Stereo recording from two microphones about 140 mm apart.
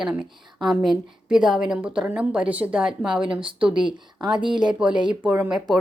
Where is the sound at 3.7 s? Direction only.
35° right (ahead or behind).